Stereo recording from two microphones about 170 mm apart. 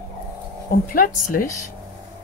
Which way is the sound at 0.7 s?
55° left (ahead or behind).